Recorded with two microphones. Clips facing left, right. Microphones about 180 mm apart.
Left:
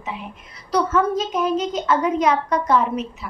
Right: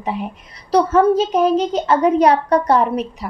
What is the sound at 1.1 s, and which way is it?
A woman's voice, 30° right (ahead or behind).